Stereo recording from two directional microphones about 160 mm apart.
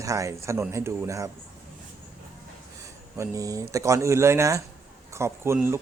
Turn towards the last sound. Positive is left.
turn(degrees=-15)  # may be behind; listen again after turning